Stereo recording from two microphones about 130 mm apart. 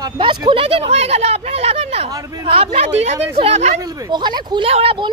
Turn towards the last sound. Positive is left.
turn(degrees=-40)  # may be behind; listen again after turning